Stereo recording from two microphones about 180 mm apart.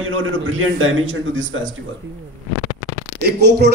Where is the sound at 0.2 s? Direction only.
90° right.